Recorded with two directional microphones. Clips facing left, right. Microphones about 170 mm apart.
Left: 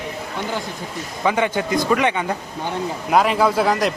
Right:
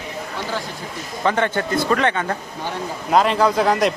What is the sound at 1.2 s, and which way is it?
A man's voice, 10° left (ahead or behind).